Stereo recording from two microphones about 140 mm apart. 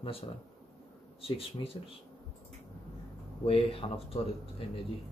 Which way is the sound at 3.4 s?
45° left (ahead or behind).